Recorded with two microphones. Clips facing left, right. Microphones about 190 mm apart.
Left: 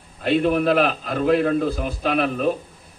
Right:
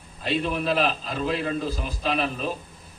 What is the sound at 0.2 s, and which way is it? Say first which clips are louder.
A man's voice: left 7 dB; 60° left (ahead or behind).